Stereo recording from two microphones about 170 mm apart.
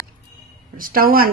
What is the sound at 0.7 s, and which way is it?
Speech, 55° right (ahead or behind).